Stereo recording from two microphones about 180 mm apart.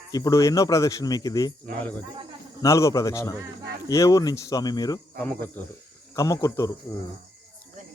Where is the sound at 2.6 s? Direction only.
15° left (ahead or behind).